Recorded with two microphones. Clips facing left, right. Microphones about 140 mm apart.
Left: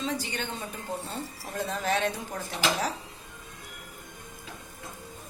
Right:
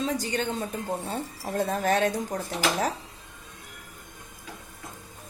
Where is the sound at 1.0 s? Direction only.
55° right (ahead or behind).